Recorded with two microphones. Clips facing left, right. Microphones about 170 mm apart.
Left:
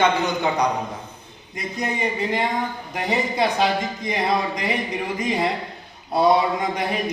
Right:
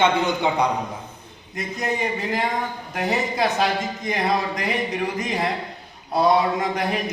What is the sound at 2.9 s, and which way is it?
Speech, centre (ahead or behind).